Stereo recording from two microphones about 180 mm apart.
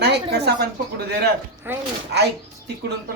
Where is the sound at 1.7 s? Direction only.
10° right (ahead or behind).